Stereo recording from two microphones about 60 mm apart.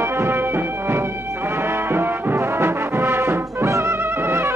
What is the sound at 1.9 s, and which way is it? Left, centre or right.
Brass instrument, right.